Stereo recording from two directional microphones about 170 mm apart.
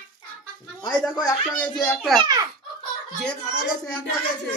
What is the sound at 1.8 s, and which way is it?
Speech, centre (ahead or behind).